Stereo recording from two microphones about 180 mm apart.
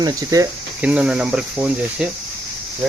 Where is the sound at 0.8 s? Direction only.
5° right (ahead or behind).